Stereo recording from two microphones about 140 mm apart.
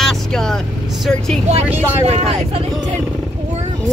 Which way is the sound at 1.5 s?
50° right (ahead or behind).